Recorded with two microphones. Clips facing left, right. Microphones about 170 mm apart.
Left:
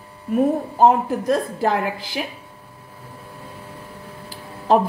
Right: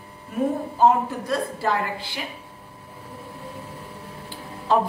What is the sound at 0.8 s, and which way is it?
Speech, 45° left (ahead or behind).